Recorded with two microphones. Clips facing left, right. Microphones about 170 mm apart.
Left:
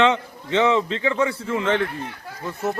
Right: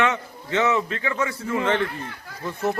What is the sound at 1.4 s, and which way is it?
Speech, 15° right (ahead or behind).